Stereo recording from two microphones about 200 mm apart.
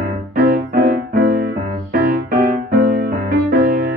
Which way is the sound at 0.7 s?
45° right (ahead or behind).